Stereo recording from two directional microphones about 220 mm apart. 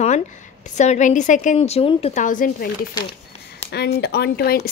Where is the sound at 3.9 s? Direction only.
45° left (ahead or behind).